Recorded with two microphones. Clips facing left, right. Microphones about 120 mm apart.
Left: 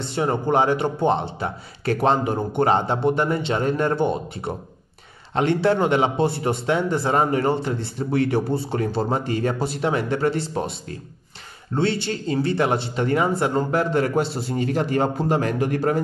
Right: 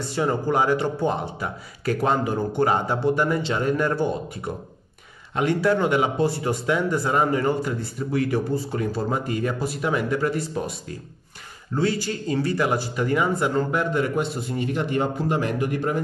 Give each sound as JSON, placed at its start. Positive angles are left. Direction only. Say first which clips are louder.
{"t": 0.0, "sound": "speech", "louder": "left 1 dB", "side_deg": 25}